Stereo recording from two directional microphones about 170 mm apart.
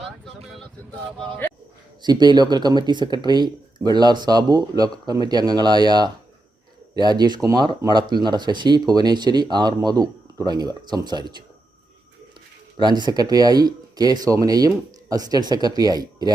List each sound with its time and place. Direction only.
2.0 s speech: 25° right (ahead or behind)
12.8 s speech: 25° right (ahead or behind)